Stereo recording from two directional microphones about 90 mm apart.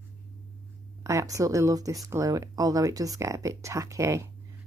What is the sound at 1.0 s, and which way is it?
Speech, 35° right (ahead or behind).